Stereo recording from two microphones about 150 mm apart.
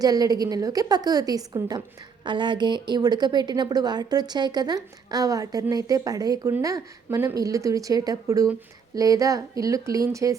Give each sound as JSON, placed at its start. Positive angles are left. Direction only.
{"t": 0.0, "sound": "a woman's voice", "side_deg": -25}